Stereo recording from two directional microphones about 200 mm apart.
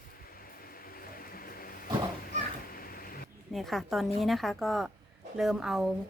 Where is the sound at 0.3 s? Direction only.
45° left (ahead or behind).